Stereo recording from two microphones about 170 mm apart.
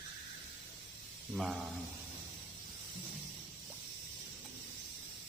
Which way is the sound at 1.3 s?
Centre (ahead or behind).